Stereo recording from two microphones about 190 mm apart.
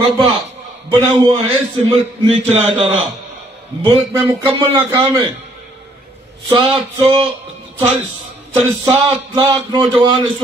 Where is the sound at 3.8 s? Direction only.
15° right (ahead or behind).